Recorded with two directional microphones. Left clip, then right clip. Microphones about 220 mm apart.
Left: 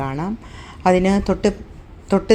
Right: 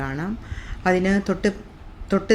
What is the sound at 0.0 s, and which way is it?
A woman's voice, 15° left (ahead or behind).